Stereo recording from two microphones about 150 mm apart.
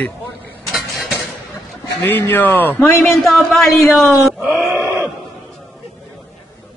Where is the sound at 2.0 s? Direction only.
15° left (ahead or behind).